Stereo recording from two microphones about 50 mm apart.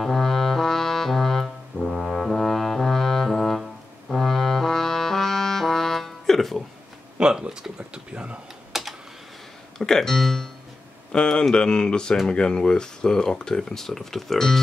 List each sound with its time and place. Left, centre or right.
0.0 s brass instrument: centre
7.2 s speech: centre
8.7 s typing: centre
9.8 s speech: centre
11.1 s speech: centre